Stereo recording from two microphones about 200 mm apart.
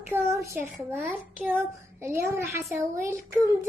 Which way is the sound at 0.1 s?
15° right (ahead or behind).